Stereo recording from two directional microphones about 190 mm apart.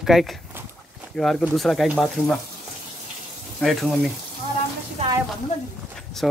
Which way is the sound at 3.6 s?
Centre (ahead or behind).